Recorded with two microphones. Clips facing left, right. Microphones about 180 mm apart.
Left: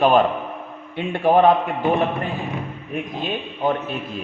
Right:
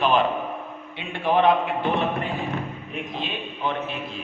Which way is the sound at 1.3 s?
45° left (ahead or behind).